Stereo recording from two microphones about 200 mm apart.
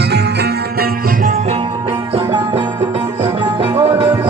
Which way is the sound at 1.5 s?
25° right (ahead or behind).